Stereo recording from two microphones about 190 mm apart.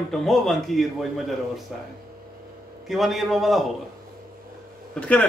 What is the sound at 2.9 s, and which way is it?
Speech, centre (ahead or behind).